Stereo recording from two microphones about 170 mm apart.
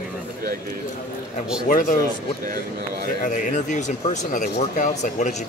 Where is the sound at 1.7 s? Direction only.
50° left (ahead or behind).